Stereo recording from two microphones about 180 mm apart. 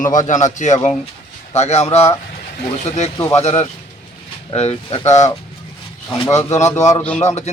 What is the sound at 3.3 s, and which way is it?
Speech, 35° left (ahead or behind).